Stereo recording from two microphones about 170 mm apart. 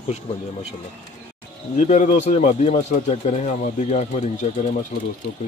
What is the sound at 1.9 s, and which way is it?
Speech, 40° left (ahead or behind).